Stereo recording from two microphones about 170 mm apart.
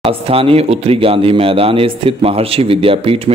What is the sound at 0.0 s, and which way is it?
Speech, 35° right (ahead or behind).